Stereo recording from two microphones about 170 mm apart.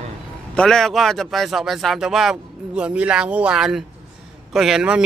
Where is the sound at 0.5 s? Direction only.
5° left (ahead or behind).